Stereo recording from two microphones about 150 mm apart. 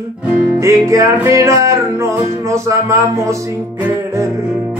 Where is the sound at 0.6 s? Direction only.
20° right (ahead or behind).